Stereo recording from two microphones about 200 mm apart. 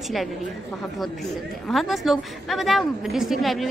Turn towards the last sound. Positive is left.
turn(degrees=0)  # may be behind; listen again after turning